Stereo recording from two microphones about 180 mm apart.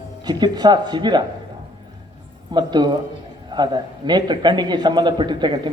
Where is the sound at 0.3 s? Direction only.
25° right (ahead or behind).